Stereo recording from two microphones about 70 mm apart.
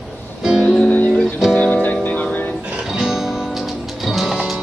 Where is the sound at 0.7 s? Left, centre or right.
Left.